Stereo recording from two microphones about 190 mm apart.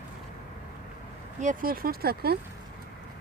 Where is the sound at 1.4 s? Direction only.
45° right (ahead or behind).